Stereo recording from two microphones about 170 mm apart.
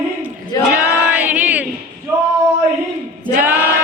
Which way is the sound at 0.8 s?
10° right (ahead or behind).